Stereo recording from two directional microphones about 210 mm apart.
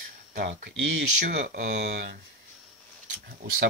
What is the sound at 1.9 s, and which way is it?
Speech, 50° right (ahead or behind).